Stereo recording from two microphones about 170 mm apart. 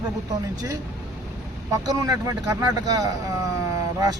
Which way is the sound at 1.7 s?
20° right (ahead or behind).